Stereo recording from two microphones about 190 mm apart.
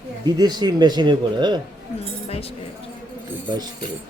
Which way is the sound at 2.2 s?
30° left (ahead or behind).